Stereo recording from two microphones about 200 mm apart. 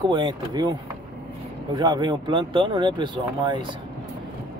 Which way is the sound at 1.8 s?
20° right (ahead or behind).